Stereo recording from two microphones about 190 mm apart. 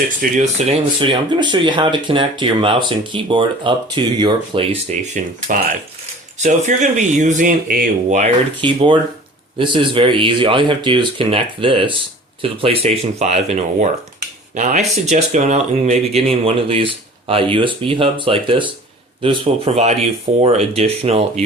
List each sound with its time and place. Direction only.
0.2 s speech: 40° right (ahead or behind)
8.6 s speech: 25° right (ahead or behind)